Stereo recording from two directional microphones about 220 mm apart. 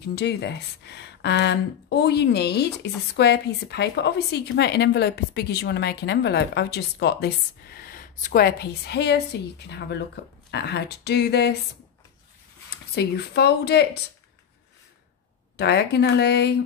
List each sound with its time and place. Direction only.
0.0 s speech: 50° left (ahead or behind)
12.9 s speech: 50° left (ahead or behind)
15.5 s speech: 50° left (ahead or behind)